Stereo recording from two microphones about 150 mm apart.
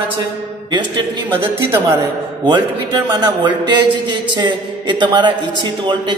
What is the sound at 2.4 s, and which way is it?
A man's voice, 30° right (ahead or behind).